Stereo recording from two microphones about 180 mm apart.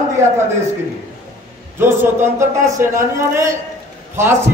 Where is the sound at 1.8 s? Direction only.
10° right (ahead or behind).